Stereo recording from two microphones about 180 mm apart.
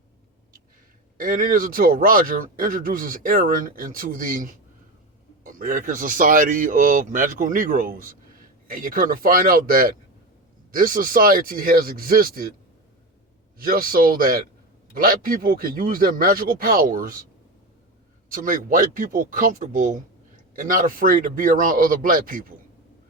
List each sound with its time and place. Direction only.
1.2 s speech: 50° right (ahead or behind)
13.6 s speech: 55° right (ahead or behind)
18.3 s speech: 50° right (ahead or behind)